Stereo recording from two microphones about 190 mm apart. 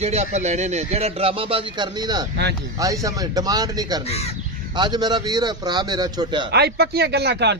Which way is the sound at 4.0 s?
35° left (ahead or behind).